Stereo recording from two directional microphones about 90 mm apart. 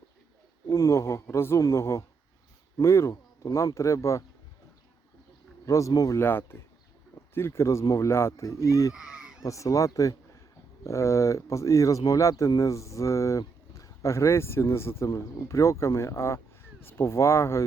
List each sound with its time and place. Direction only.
0.7 s speech: 35° left (ahead or behind)
5.6 s speech: 35° left (ahead or behind)
6.2 s speech: 25° left (ahead or behind)
8.9 s fowl: 10° right (ahead or behind)
9.4 s speech: 35° left (ahead or behind)